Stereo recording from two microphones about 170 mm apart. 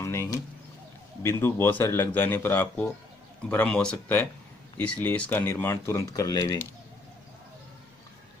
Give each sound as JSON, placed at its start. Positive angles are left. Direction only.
{"t": 0.0, "sound": "bird", "side_deg": 15}
{"t": 1.2, "sound": "speech", "side_deg": 15}